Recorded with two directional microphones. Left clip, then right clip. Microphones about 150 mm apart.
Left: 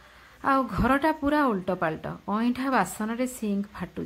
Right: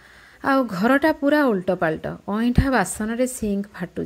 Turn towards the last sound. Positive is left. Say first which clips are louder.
# right 5 dB
turn(degrees=-25)  # may be behind; listen again after turning